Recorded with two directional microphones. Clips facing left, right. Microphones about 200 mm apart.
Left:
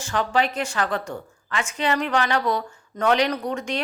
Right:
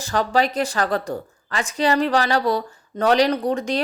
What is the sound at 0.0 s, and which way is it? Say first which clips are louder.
A woman's voice: right 3 dB; 35° right (ahead or behind).